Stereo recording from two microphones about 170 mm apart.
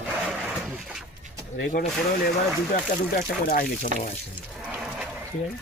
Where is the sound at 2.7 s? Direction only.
60° left (ahead or behind).